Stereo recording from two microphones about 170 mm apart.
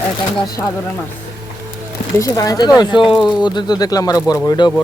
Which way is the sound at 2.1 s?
20° left (ahead or behind).